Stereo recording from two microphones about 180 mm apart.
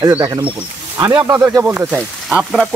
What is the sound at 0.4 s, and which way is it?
Speech, 30° right (ahead or behind).